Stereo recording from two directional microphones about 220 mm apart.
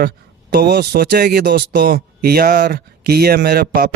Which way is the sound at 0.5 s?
45° right (ahead or behind).